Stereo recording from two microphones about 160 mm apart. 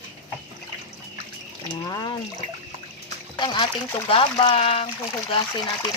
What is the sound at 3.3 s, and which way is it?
Speech, 30° left (ahead or behind).